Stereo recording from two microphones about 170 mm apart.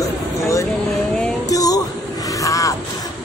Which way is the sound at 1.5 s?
20° left (ahead or behind).